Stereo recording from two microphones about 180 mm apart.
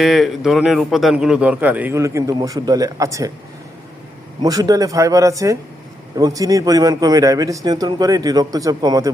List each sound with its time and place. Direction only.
0.0 s a man's voice: centre (ahead or behind); by 3.3 s 20° right (ahead or behind)
4.4 s a man's voice: 20° right (ahead or behind)